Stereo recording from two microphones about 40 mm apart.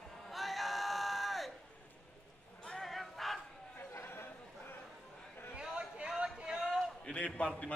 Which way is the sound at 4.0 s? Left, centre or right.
Left.